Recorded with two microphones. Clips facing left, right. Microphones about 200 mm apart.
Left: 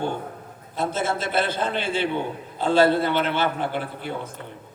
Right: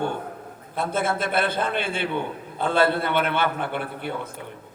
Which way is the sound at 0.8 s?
55° right (ahead or behind).